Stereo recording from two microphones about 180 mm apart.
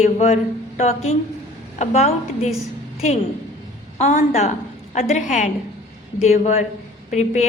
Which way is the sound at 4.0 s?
40° left (ahead or behind).